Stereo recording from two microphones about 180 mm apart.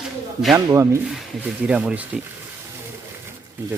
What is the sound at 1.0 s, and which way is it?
Speech, 5° right (ahead or behind).